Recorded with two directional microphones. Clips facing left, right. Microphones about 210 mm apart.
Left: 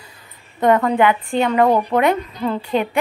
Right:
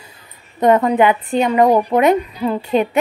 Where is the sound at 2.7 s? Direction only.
20° right (ahead or behind).